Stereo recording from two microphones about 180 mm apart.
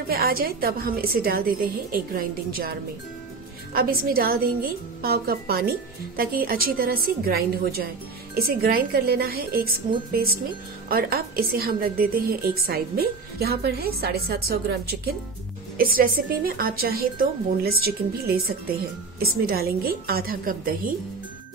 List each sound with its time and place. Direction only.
0.1 s a woman's voice: 55° right (ahead or behind)
3.7 s a woman's voice: 55° right (ahead or behind)
15.8 s a woman's voice: 55° right (ahead or behind)